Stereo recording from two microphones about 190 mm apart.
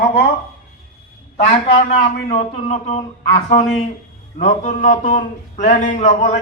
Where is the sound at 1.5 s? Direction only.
30° left (ahead or behind).